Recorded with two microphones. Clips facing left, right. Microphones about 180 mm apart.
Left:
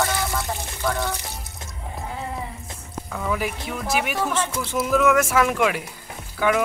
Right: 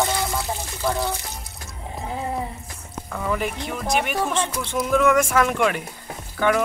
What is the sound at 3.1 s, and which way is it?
Speech, centre (ahead or behind).